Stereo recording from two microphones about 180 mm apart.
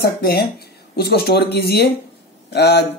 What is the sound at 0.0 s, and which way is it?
A man's voice, 60° left (ahead or behind).